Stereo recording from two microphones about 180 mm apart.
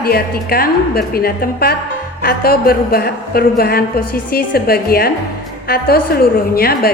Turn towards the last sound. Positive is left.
turn(degrees=60)  # may be behind; listen again after turning